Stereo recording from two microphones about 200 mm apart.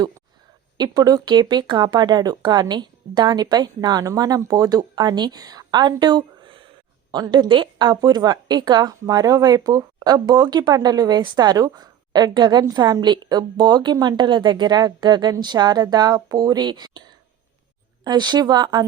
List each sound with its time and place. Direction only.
0.8 s speech: 20° right (ahead or behind)